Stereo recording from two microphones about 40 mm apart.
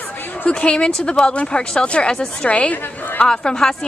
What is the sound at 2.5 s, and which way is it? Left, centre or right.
Speech, left.